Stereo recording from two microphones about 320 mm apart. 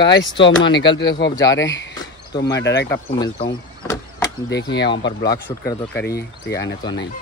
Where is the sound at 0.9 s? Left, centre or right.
Centre.